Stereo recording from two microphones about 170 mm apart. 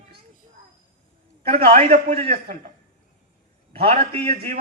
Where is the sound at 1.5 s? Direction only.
40° right (ahead or behind).